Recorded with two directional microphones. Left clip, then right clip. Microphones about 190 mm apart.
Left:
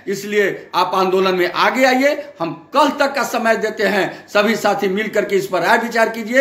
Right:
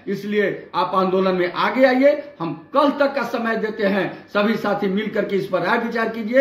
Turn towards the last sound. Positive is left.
turn(degrees=-10)  # may be behind; listen again after turning